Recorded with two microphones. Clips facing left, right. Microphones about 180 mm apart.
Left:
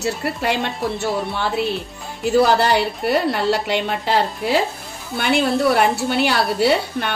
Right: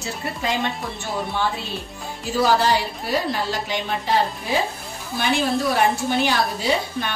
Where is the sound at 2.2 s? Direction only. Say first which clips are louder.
Left 4 dB; 65° left (ahead or behind).